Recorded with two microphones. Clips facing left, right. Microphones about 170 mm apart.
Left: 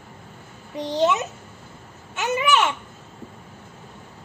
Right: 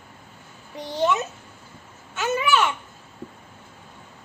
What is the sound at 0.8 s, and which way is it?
A child's voice, 20° left (ahead or behind).